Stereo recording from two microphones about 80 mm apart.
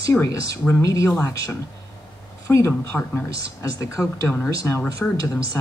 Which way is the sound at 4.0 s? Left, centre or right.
Left.